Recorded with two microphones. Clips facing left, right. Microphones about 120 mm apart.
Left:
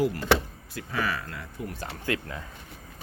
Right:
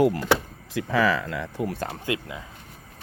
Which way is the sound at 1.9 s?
20° right (ahead or behind).